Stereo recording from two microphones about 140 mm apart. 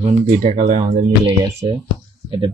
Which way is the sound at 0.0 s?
55° right (ahead or behind).